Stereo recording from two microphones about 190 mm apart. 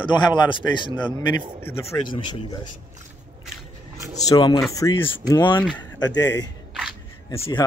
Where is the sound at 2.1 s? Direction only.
20° left (ahead or behind).